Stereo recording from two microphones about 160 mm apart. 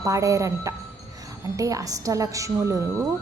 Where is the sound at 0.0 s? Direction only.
20° right (ahead or behind).